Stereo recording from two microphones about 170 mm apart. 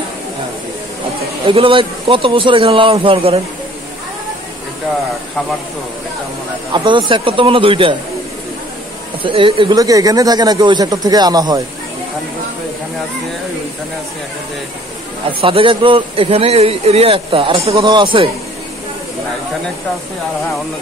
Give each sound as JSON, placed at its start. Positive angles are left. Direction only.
{"t": 1.4, "sound": "a man's voice", "side_deg": -30}
{"t": 6.7, "sound": "a man's voice", "side_deg": -30}
{"t": 9.2, "sound": "speech", "side_deg": -30}
{"t": 15.2, "sound": "a man's voice", "side_deg": -30}